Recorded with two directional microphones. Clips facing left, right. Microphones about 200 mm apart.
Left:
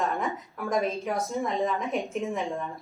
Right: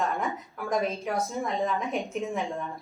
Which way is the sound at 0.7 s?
Centre (ahead or behind).